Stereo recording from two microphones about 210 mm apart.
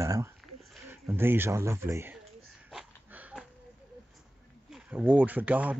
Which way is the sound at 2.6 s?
5° right (ahead or behind).